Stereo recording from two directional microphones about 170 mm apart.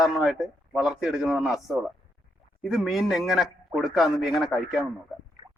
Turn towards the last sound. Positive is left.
turn(degrees=0)  # may be behind; listen again after turning